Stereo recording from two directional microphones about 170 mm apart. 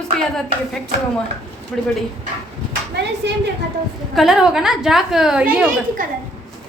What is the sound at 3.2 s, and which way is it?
Speech, 90° right.